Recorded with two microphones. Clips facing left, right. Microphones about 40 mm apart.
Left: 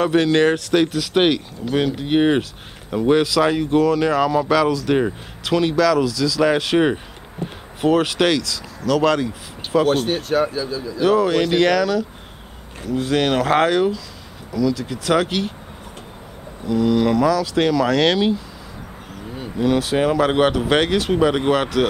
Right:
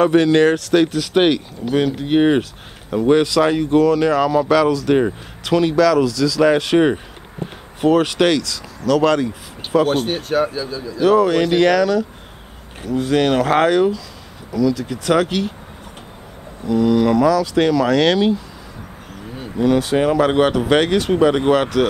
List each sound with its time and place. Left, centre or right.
0.0 s speech: centre
0.4 s speech: centre
0.7 s speech: centre
16.6 s speech: centre
19.6 s speech: centre